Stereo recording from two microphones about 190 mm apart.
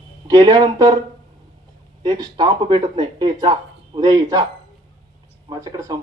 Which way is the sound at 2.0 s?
20° right (ahead or behind).